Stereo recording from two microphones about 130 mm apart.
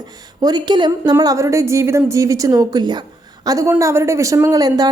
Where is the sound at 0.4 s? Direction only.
35° right (ahead or behind).